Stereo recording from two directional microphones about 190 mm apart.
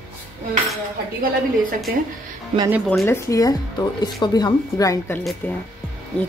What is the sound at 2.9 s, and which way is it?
A woman's voice, 10° left (ahead or behind).